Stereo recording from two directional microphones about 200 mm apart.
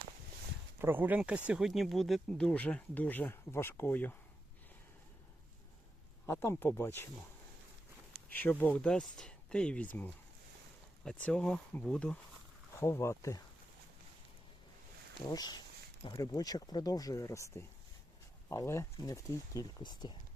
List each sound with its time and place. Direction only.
0.8 s speech: 10° right (ahead or behind); by 4.1 s 10° left (ahead or behind)
6.2 s speech: 15° left (ahead or behind)
8.3 s speech: 10° left (ahead or behind)
15.2 s speech: 20° left (ahead or behind)